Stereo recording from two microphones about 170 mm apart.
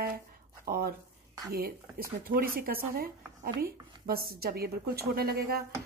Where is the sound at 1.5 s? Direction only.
60° right (ahead or behind).